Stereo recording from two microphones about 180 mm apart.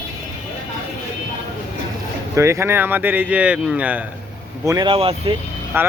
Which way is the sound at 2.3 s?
15° right (ahead or behind).